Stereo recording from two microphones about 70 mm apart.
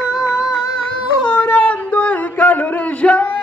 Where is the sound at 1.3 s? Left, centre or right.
Left.